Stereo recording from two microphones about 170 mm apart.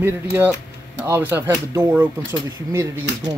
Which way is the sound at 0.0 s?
10° right (ahead or behind).